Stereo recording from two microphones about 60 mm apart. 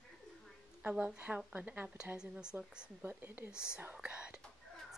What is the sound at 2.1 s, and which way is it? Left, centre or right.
Speech, centre.